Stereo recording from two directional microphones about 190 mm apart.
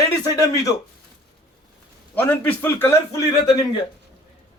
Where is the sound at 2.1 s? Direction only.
10° left (ahead or behind).